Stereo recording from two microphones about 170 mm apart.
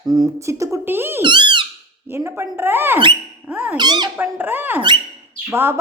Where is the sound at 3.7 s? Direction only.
25° right (ahead or behind).